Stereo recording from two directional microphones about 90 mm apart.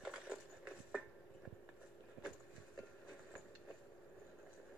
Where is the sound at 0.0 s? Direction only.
10° right (ahead or behind).